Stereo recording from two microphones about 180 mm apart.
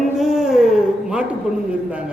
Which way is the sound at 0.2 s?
Centre (ahead or behind).